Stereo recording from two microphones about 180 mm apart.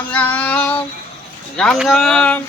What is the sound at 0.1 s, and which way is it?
Child singing, 10° left (ahead or behind).